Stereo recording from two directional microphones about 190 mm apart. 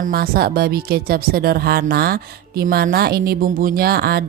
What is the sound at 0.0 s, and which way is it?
A woman's voice, 50° right (ahead or behind).